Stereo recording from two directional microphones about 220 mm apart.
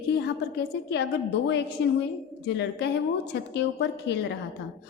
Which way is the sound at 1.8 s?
55° left (ahead or behind).